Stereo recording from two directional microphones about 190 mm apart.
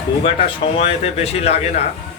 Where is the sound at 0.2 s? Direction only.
30° left (ahead or behind).